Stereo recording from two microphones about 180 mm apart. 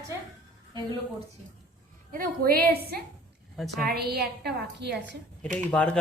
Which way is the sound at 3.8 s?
60° right (ahead or behind).